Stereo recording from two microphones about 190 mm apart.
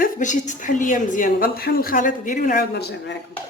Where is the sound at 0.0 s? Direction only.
40° left (ahead or behind); by 3.2 s 65° left (ahead or behind).